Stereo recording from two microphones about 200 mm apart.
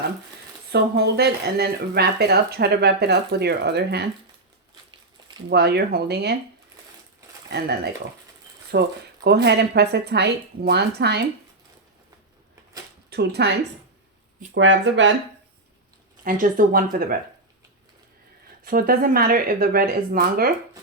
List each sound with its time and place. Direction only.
0.7 s speech: 55° right (ahead or behind)
5.5 s speech: 55° right (ahead or behind)
8.7 s speech: 55° right (ahead or behind)
13.1 s speech: 55° right (ahead or behind)
14.5 s speech: 65° right (ahead or behind)
16.2 s speech: 45° right (ahead or behind)
18.6 s speech: 45° right (ahead or behind)